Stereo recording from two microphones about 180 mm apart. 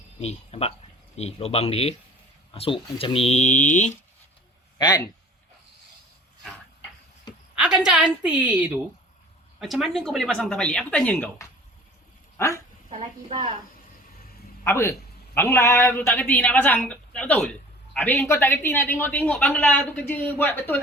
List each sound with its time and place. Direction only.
0.2 s speech: 35° left (ahead or behind)
4.8 s a man's voice: 25° left (ahead or behind)
7.5 s a woman's voice: 5° right (ahead or behind); by 12.5 s 15° left (ahead or behind)
12.9 s a woman's voice: 35° right (ahead or behind)
14.6 s a man's voice: 15° left (ahead or behind)